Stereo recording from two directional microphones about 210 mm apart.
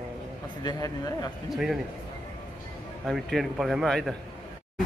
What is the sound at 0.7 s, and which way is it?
Speech, 15° left (ahead or behind).